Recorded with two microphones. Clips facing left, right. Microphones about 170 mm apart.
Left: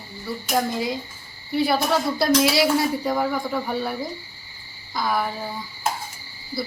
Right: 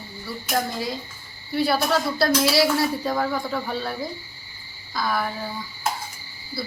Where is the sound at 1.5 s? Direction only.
20° left (ahead or behind).